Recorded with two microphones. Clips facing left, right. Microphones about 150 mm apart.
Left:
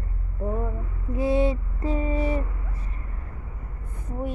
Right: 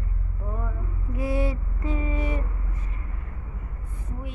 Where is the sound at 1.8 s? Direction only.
35° left (ahead or behind).